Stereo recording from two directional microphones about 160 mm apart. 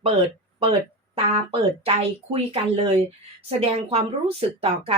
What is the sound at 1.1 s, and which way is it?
Speech, 35° right (ahead or behind).